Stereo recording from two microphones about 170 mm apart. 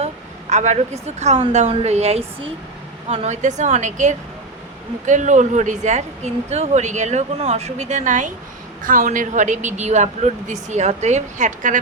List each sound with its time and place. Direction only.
0.5 s a woman's voice: 45° right (ahead or behind)